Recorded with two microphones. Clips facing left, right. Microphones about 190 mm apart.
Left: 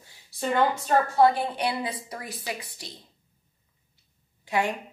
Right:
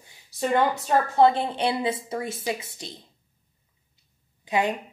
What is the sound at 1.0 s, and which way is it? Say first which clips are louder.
A woman's voice: right 3 dB; 20° right (ahead or behind).